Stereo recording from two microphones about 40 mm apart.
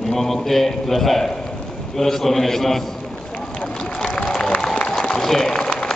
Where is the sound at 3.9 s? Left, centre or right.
Left.